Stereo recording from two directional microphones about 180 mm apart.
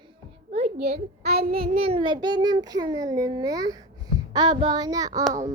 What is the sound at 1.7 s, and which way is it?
A child's voice, 30° right (ahead or behind).